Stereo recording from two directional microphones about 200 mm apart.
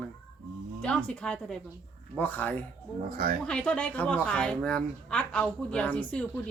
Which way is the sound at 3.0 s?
45° right (ahead or behind).